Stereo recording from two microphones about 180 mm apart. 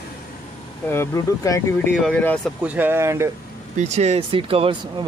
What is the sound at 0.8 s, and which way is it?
Speech, 15° left (ahead or behind).